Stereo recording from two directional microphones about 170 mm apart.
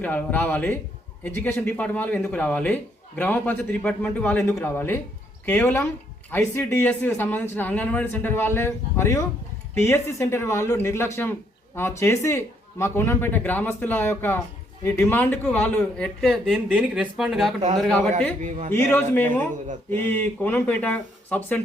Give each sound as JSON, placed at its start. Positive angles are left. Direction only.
{"t": 0.0, "sound": "a man's voice", "side_deg": 10}
{"t": 18.4, "sound": "a man's voice", "side_deg": -45}
{"t": 18.7, "sound": "speech", "side_deg": 10}